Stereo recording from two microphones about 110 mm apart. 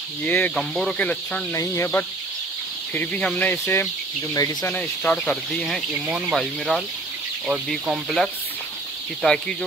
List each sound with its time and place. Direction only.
0.2 s speech: 15° left (ahead or behind)
1.5 s speech: 25° left (ahead or behind)
4.3 s speech: 35° left (ahead or behind)
4.6 s speech: 15° left (ahead or behind)
6.0 s speech: 10° right (ahead or behind)
6.3 s speech: centre (ahead or behind)
9.2 s speech: 5° left (ahead or behind)